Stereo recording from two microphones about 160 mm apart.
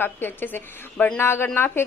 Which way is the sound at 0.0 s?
15° left (ahead or behind).